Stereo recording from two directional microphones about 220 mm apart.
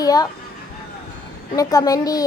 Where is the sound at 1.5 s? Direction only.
15° left (ahead or behind).